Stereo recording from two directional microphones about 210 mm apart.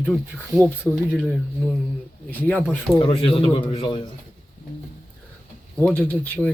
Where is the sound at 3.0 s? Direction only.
25° left (ahead or behind).